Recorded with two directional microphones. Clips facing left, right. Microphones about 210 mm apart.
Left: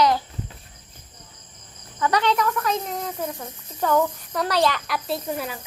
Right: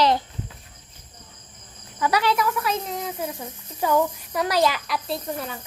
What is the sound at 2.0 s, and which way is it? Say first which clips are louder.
A child's voice: even; 10° right (ahead or behind).